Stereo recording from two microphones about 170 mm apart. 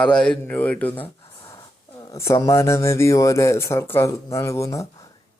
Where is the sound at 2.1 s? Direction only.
15° left (ahead or behind).